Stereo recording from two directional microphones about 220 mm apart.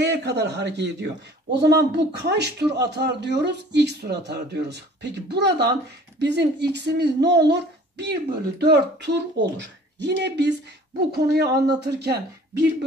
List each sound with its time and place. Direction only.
0.0 s a man's voice: 50° right (ahead or behind)